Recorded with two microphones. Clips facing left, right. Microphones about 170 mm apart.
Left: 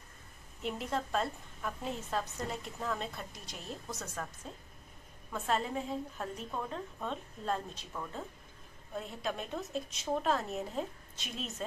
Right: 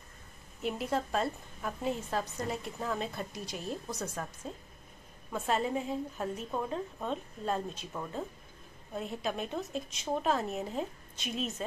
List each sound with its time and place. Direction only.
0.6 s a woman's voice: 5° right (ahead or behind)
4.0 s a woman's voice: 15° right (ahead or behind)
5.3 s a woman's voice: 10° right (ahead or behind)